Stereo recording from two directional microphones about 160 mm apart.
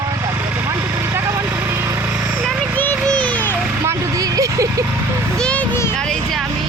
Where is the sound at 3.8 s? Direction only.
20° right (ahead or behind).